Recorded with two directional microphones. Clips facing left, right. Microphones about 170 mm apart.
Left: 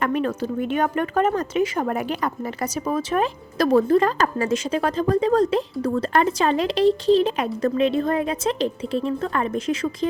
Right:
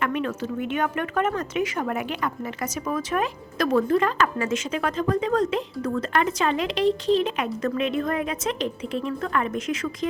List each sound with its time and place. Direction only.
0.0 s speech: 35° left (ahead or behind)